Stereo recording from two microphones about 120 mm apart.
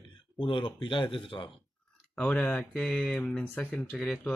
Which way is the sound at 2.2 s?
10° left (ahead or behind).